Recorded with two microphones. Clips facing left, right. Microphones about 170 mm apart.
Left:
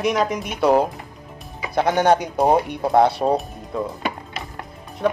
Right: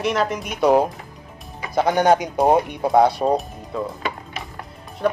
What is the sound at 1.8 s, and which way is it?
Speech, centre (ahead or behind).